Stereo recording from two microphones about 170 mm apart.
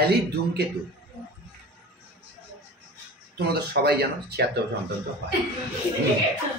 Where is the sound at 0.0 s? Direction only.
70° right (ahead or behind).